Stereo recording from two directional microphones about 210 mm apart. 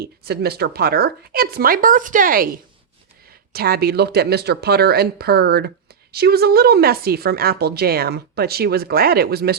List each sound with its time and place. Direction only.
0.0 s speech: 50° right (ahead or behind)
3.5 s speech: 45° right (ahead or behind)